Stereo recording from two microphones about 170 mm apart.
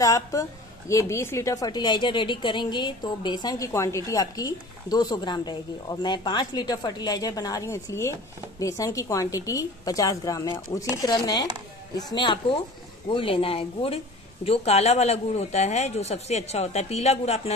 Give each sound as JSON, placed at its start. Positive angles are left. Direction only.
{"t": 0.0, "sound": "a woman's voice", "side_deg": 20}